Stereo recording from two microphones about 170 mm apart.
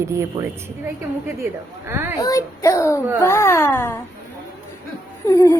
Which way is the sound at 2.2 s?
20° left (ahead or behind).